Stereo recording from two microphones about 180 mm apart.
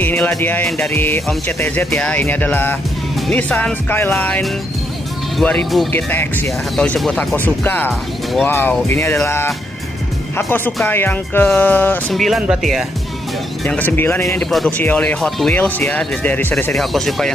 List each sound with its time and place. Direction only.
0.0 s music: 10° left (ahead or behind)
5.4 s speech: 5° left (ahead or behind)
5.9 s music: 10° left (ahead or behind)
12.1 s speech: centre (ahead or behind)
13.7 s music: 10° left (ahead or behind)
14.5 s speech: 5° left (ahead or behind)